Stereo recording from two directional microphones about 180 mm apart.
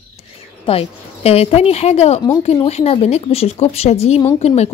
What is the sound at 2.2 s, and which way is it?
Speech, 25° left (ahead or behind).